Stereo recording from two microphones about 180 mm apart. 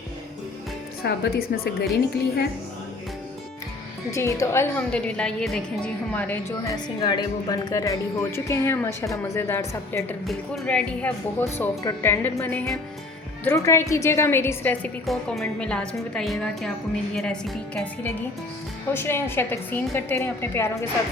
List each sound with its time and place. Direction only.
1.0 s a woman's voice: 60° left (ahead or behind)
4.1 s a woman's voice: 15° left (ahead or behind)
6.8 s a woman's voice: 25° left (ahead or behind)
10.2 s a woman's voice: 5° left (ahead or behind)